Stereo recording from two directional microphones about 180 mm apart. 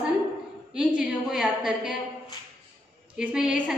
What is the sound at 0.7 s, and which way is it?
A woman's voice, 5° right (ahead or behind).